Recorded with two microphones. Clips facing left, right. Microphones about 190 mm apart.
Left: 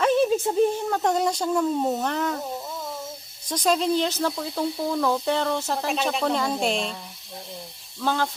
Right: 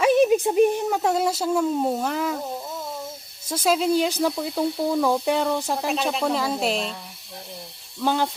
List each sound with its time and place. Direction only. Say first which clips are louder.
0.0 s speech: right 3 dB; 15° right (ahead or behind)
3.5 s speech: right 1 dB; 5° right (ahead or behind)
8.0 s speech: right 2 dB; 15° right (ahead or behind)